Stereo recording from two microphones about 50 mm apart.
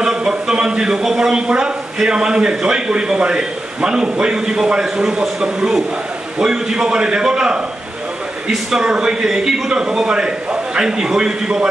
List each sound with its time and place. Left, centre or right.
0.0 s speech: centre